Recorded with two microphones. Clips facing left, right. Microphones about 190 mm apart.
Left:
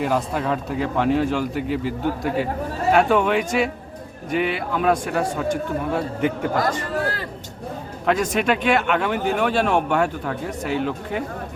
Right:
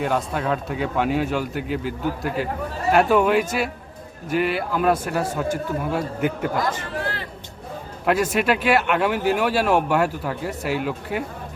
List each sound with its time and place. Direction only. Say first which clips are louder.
0.0 s speech: left 1 dB; centre (ahead or behind)
6.9 s a sound: left 4 dB; 40° left (ahead or behind)
8.0 s speech: even; 5° right (ahead or behind)